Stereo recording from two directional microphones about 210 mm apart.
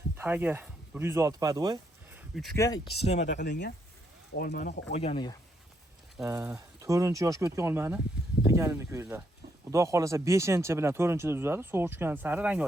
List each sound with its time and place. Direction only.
0.2 s speech: 10° right (ahead or behind)
2.1 s a sound: centre (ahead or behind)
2.6 s speech: 15° left (ahead or behind)
2.9 s speech: 30° left (ahead or behind)
3.2 s speech: 55° left (ahead or behind); by 5.4 s 20° left (ahead or behind)
6.2 s speech: 15° right (ahead or behind)